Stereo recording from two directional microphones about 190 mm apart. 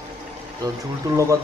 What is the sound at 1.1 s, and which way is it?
Speech, 15° right (ahead or behind).